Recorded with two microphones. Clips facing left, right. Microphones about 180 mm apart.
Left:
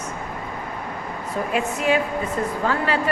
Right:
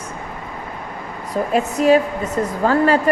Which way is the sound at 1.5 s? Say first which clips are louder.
Right 7 dB; 40° right (ahead or behind).